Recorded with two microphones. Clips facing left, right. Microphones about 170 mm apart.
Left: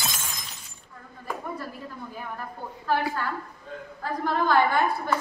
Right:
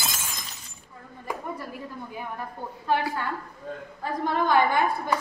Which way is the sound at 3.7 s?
45° right (ahead or behind).